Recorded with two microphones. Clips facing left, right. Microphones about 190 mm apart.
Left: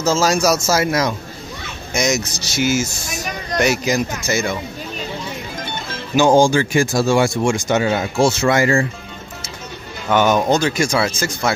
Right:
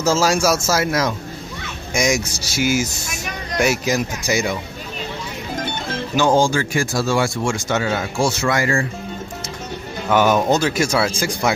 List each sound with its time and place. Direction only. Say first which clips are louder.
0.0 s speech: left 1 dB; 5° right (ahead or behind)
6.1 s speech: left 4 dB; 15° left (ahead or behind)
10.0 s speech: left 1 dB; 5° right (ahead or behind)